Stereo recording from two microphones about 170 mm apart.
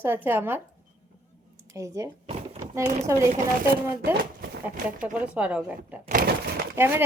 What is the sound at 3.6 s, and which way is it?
Speech, 65° right (ahead or behind).